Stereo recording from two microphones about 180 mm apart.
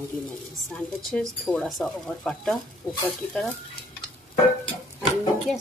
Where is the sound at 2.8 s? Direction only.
15° left (ahead or behind).